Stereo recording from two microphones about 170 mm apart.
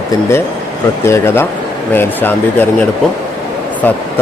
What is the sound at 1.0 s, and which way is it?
Speech, 15° left (ahead or behind).